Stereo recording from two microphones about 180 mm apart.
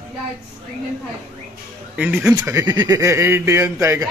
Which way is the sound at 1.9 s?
5° right (ahead or behind).